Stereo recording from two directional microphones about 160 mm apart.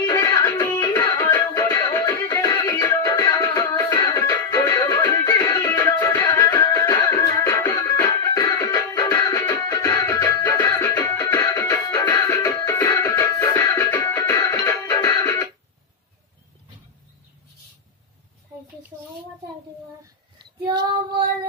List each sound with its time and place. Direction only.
0.0 s music: 25° left (ahead or behind)
6.6 s music: 25° left (ahead or behind)
13.9 s music: 15° left (ahead or behind)
20.6 s child singing: 25° right (ahead or behind)